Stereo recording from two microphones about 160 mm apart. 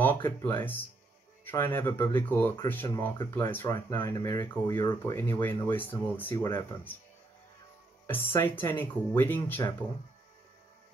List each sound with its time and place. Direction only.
0.0 s speech: 10° left (ahead or behind)
8.1 s speech: 15° left (ahead or behind)